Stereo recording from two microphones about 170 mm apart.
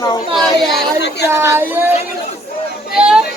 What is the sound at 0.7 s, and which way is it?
Speech, 75° left (ahead or behind).